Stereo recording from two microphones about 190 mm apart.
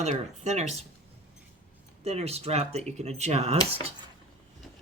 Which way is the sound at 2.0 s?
35° right (ahead or behind).